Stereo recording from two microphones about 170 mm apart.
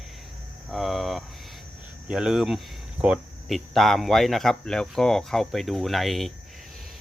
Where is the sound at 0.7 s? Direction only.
Centre (ahead or behind).